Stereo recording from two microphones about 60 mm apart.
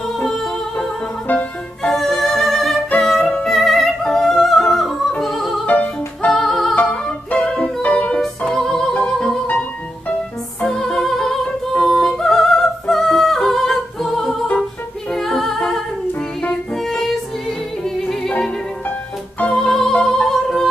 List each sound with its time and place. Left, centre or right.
0.2 s music: centre
1.2 s music: left
1.9 s music: centre
4.0 s opera: centre
4.4 s music: centre
5.7 s music: left
6.3 s music: centre
6.9 s music: centre
8.4 s music: centre
19.5 s music: centre